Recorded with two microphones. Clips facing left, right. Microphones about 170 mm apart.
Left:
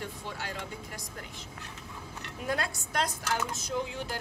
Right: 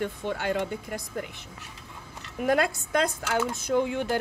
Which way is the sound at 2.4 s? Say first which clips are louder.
Right 9 dB; 60° right (ahead or behind).